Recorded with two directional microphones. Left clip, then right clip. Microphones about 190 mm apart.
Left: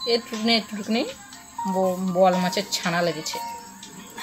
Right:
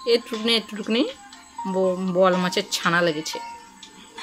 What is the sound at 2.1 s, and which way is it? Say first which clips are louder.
Speech: even; 35° right (ahead or behind).